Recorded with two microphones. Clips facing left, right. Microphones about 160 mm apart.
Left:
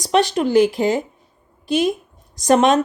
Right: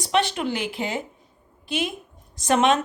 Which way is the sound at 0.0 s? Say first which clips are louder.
Left 6 dB; 40° left (ahead or behind).